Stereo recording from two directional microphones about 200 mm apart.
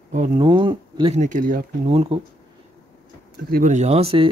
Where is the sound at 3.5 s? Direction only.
45° right (ahead or behind).